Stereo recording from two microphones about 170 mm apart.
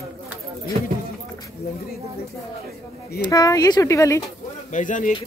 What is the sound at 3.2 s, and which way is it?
Speech, 20° left (ahead or behind).